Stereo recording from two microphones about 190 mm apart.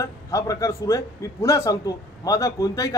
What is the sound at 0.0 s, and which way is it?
A man's voice, 15° left (ahead or behind).